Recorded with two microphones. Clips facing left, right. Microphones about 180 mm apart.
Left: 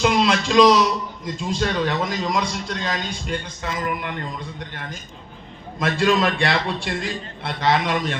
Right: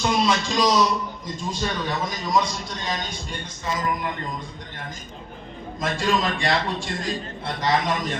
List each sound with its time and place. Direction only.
0.0 s a man's voice: 90° left; by 4.1 s 70° left (ahead or behind)
5.8 s a man's voice: 65° left (ahead or behind)